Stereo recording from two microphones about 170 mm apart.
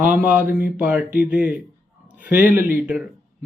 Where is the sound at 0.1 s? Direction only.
10° right (ahead or behind).